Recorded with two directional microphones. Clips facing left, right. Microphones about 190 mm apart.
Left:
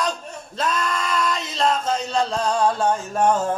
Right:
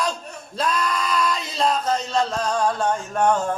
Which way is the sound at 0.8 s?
5° right (ahead or behind).